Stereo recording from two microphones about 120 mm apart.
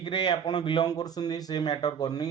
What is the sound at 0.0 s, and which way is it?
Speech, 40° left (ahead or behind).